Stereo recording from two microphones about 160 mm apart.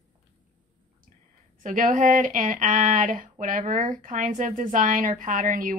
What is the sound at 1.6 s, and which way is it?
Speech, 55° right (ahead or behind).